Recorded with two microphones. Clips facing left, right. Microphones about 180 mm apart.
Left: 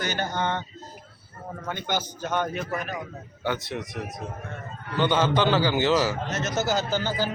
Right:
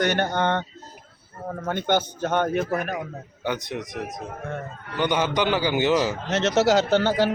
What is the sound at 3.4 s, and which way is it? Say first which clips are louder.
A man's voice: right 1 dB; 20° right (ahead or behind).